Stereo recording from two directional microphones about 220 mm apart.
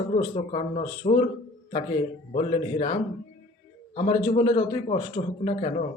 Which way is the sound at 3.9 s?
25° left (ahead or behind).